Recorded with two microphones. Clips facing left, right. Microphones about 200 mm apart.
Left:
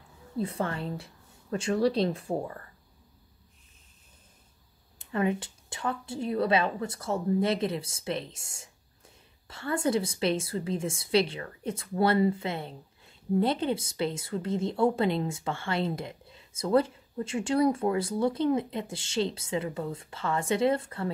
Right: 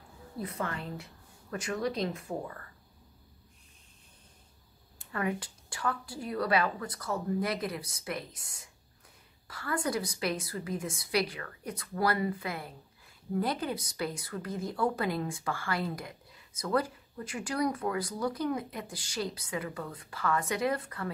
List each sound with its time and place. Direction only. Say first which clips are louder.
0.4 s a woman's voice: left 5 dB; 30° left (ahead or behind)
4.9 s a woman's voice: left 5 dB; 20° left (ahead or behind)